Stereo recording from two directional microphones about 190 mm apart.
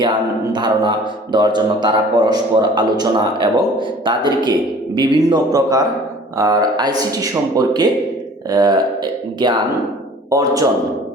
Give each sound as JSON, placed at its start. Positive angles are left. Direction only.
{"t": 0.5, "sound": "a man's voice", "side_deg": -25}